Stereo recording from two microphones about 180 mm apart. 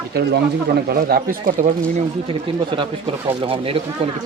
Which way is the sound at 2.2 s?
25° right (ahead or behind).